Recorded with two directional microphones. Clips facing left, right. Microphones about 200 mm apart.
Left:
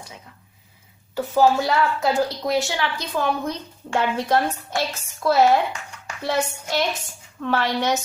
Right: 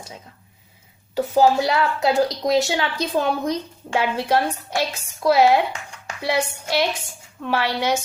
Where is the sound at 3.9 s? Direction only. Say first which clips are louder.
Right 1 dB; 10° right (ahead or behind).